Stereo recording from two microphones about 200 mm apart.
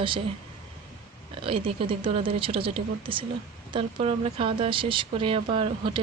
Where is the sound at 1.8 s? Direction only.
25° right (ahead or behind).